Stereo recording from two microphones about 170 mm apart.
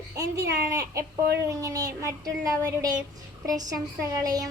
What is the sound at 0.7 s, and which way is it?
A woman's voice, 20° right (ahead or behind).